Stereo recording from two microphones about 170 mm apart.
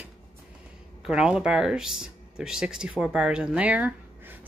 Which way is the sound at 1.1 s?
5° right (ahead or behind).